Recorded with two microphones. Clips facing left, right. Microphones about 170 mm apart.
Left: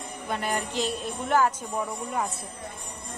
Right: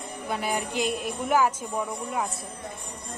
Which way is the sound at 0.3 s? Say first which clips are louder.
Right 1 dB; 5° right (ahead or behind).